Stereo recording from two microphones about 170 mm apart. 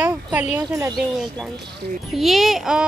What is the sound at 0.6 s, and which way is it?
Speech, 20° right (ahead or behind).